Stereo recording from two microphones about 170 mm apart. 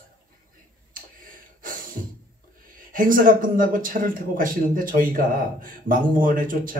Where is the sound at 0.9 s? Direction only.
55° right (ahead or behind).